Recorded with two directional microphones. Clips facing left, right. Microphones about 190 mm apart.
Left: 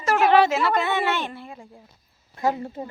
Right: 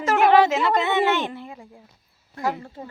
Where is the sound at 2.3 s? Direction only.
20° left (ahead or behind).